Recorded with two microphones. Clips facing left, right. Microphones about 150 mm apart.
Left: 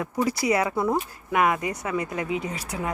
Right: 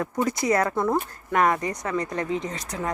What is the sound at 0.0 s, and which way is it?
Speech, 10° left (ahead or behind).